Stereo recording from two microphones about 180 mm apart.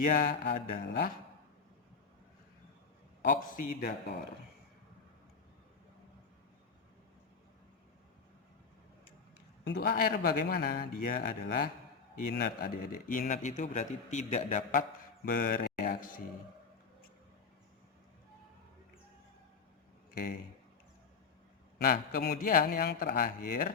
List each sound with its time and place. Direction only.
0.0 s a man's voice: 50° left (ahead or behind)
3.2 s a man's voice: 50° left (ahead or behind)
9.6 s a man's voice: 55° left (ahead or behind)
21.8 s a man's voice: 50° left (ahead or behind)